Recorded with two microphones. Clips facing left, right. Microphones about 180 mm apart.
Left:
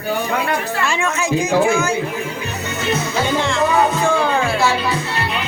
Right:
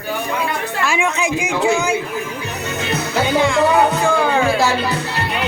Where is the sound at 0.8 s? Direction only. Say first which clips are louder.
Right 4 dB; 10° right (ahead or behind).